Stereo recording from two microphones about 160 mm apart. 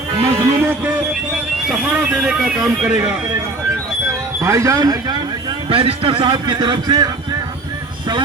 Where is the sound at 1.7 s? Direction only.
5° right (ahead or behind).